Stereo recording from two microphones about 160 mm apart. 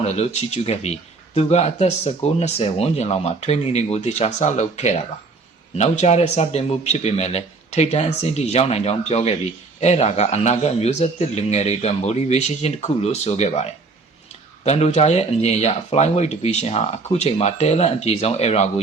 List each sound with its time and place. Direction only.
0.0 s a man's voice: 45° left (ahead or behind)